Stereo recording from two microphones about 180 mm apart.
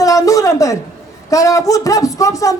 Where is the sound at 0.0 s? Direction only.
20° left (ahead or behind).